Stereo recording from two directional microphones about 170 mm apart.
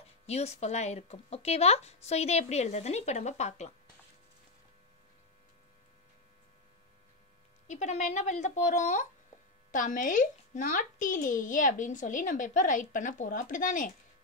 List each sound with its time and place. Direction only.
0.3 s speech: 40° left (ahead or behind)
7.6 s speech: 45° left (ahead or behind)